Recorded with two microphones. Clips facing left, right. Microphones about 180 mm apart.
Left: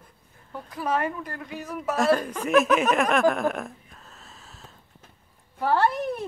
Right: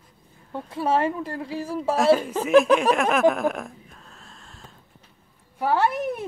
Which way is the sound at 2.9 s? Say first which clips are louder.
Right 1 dB; centre (ahead or behind).